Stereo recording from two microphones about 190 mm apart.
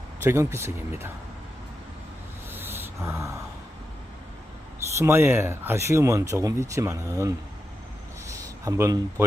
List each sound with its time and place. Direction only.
0.3 s speech: 15° right (ahead or behind)
2.5 s snort: 10° right (ahead or behind)
4.9 s a man's voice: 15° right (ahead or behind)